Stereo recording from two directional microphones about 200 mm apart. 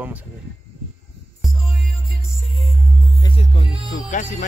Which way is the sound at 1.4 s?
Centre (ahead or behind).